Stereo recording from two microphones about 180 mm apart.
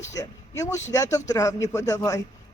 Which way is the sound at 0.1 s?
15° left (ahead or behind).